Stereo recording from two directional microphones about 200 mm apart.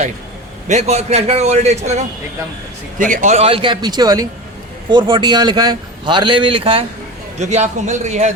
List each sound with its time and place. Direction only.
0.7 s a man's voice: 35° right (ahead or behind)